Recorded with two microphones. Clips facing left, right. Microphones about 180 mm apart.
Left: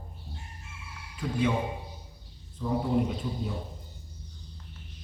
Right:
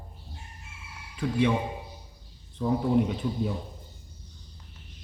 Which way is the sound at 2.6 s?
65° right (ahead or behind).